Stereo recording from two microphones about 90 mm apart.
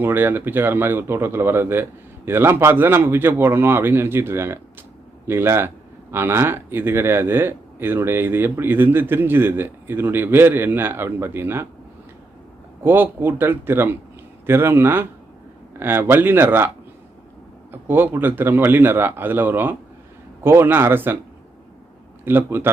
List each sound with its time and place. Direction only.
0.0 s speech: 25° right (ahead or behind)
12.8 s speech: 25° right (ahead or behind)
22.2 s speech: 25° right (ahead or behind)